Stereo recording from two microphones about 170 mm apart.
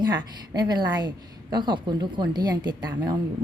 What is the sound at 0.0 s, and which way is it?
A woman's voice, 25° right (ahead or behind).